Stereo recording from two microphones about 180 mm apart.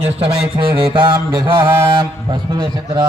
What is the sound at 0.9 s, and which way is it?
Speech, 30° right (ahead or behind).